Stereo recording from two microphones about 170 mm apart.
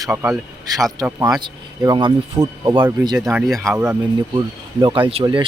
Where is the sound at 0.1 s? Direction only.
5° right (ahead or behind).